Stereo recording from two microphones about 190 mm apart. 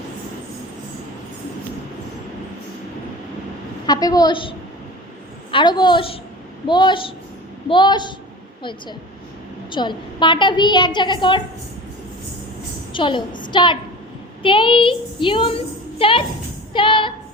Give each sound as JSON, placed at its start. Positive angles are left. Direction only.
{"t": 3.8, "sound": "a child's voice", "side_deg": 20}
{"t": 9.7, "sound": "a child's voice", "side_deg": 25}
{"t": 12.9, "sound": "a woman's voice", "side_deg": 25}